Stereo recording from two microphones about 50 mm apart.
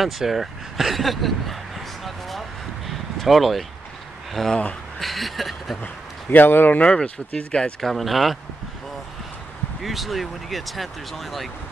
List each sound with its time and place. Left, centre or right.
0.0 s speech: centre
2.0 s a sound: centre
4.3 s speech: centre
6.3 s speech: left
6.8 s speech: left
7.8 s speech: centre
9.8 s speech: centre